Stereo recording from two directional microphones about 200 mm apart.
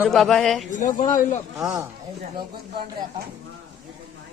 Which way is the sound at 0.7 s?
40° left (ahead or behind).